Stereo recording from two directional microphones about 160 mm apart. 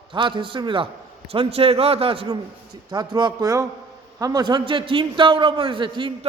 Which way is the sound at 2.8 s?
25° right (ahead or behind).